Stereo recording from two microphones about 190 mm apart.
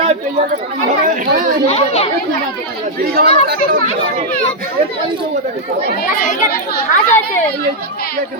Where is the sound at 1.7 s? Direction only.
35° left (ahead or behind).